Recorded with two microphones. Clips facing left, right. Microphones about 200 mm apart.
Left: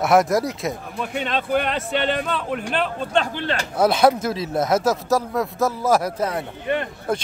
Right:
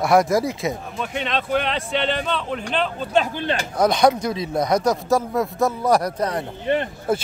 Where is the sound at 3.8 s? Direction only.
5° left (ahead or behind).